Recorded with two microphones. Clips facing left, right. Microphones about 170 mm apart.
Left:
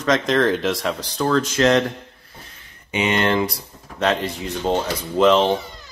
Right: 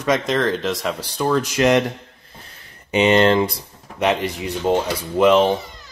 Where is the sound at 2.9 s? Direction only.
35° right (ahead or behind).